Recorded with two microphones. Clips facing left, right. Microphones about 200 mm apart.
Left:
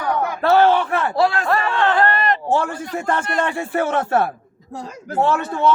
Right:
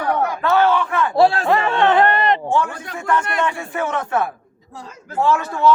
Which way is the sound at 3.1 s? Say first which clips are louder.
Right 2 dB; 40° left (ahead or behind).